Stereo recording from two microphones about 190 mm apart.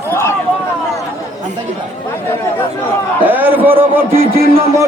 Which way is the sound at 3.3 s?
10° right (ahead or behind).